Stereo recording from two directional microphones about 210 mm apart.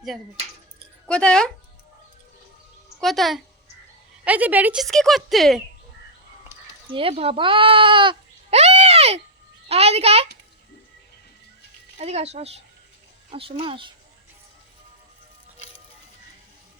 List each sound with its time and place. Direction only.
1.0 s a woman's voice: 5° left (ahead or behind)
3.0 s a woman's voice: centre (ahead or behind)
6.9 s a child's voice: 25° right (ahead or behind)
11.9 s a child's voice: 30° right (ahead or behind)